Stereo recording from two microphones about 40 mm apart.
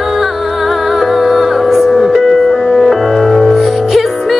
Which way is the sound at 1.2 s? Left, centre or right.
Centre.